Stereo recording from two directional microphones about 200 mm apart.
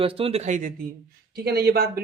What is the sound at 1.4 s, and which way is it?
Speech, 50° right (ahead or behind).